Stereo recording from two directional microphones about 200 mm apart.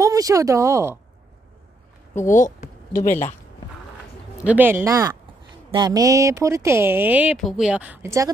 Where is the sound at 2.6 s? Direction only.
40° left (ahead or behind).